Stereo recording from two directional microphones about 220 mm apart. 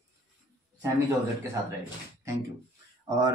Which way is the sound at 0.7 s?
15° right (ahead or behind).